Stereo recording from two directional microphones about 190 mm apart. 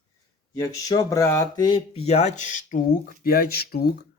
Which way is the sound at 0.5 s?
20° left (ahead or behind).